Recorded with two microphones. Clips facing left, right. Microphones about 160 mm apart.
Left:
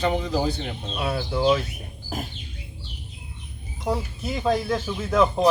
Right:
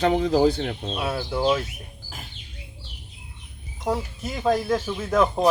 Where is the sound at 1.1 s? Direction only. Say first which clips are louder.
Left 2 dB; 5° right (ahead or behind).